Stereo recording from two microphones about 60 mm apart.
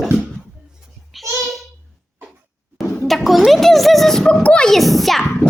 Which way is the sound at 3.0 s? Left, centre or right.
Centre.